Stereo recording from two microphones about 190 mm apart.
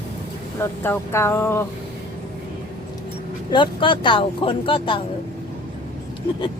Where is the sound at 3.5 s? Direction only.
25° left (ahead or behind).